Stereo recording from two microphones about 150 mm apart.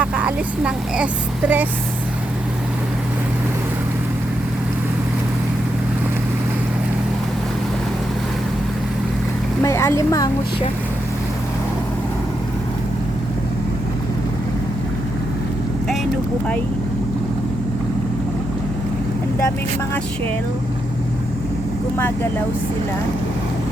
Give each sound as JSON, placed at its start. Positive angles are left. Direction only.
{"t": 0.0, "sound": "speech", "side_deg": -10}
{"t": 9.6, "sound": "speech", "side_deg": 20}
{"t": 21.9, "sound": "speech", "side_deg": 15}